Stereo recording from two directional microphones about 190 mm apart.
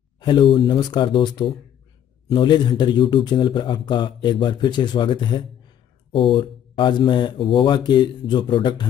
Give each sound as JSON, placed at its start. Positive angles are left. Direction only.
{"t": 0.2, "sound": "a man's voice", "side_deg": 25}